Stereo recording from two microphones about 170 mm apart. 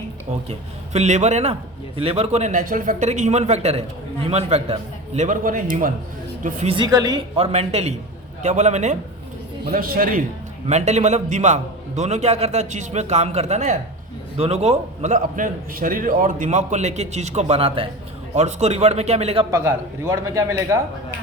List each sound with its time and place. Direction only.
0.9 s a man's voice: 40° right (ahead or behind)
6.4 s a man's voice: 40° right (ahead or behind)
6.7 s speech: 20° right (ahead or behind)
7.3 s a man's voice: 35° right (ahead or behind)
9.7 s a man's voice: 55° right (ahead or behind)
10.7 s a man's voice: 40° right (ahead or behind)
19.5 s a man's voice: 15° right (ahead or behind)